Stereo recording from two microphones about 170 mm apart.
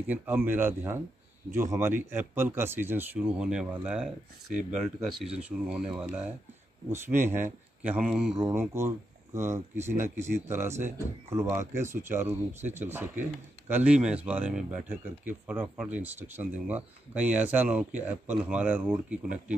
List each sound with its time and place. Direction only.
0.1 s speech: 10° right (ahead or behind)
5.2 s speech: 5° right (ahead or behind)
8.4 s speech: 15° right (ahead or behind)